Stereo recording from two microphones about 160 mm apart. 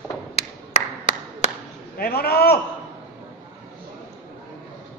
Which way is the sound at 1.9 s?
75° left (ahead or behind).